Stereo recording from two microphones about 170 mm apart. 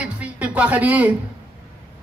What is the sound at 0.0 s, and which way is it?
Music, 10° right (ahead or behind).